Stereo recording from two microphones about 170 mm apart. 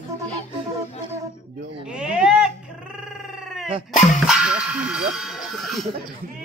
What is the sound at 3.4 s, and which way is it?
Dog, centre (ahead or behind).